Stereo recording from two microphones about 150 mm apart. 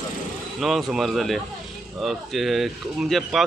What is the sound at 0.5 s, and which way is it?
Speech, centre (ahead or behind).